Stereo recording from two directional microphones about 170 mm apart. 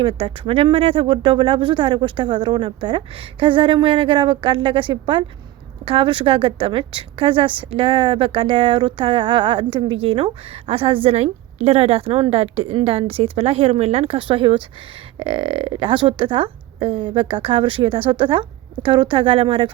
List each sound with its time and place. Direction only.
0.0 s a woman's voice: 30° right (ahead or behind)